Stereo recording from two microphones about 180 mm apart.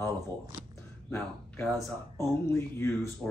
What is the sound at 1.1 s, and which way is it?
Speech, 15° left (ahead or behind).